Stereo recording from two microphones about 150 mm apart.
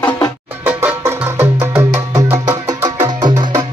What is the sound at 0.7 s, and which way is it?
Music, 15° right (ahead or behind).